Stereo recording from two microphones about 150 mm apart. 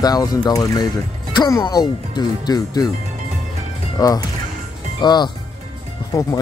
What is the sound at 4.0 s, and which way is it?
Speech, 25° left (ahead or behind).